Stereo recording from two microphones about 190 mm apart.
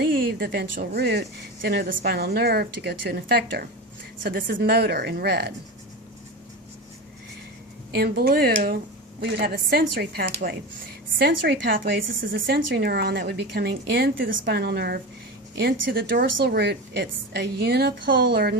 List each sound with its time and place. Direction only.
0.0 s a woman's voice: 55° right (ahead or behind)
7.9 s a woman's voice: 55° right (ahead or behind)